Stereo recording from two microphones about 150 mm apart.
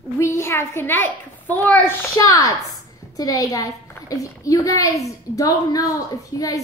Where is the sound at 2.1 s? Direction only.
20° left (ahead or behind).